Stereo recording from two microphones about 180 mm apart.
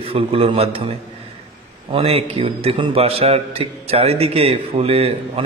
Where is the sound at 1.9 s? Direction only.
30° right (ahead or behind).